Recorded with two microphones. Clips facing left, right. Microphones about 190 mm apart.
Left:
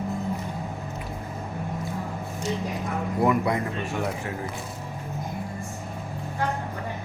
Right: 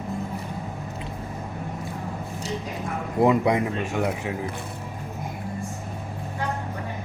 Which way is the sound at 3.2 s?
20° right (ahead or behind).